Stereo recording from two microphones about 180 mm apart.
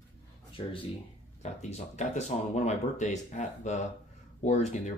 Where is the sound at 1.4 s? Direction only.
40° left (ahead or behind).